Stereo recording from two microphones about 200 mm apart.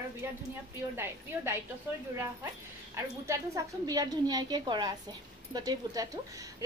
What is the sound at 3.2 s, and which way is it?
A woman's voice, 15° right (ahead or behind).